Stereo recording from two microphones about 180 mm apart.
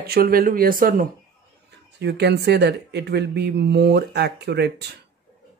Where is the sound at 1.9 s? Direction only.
65° right (ahead or behind).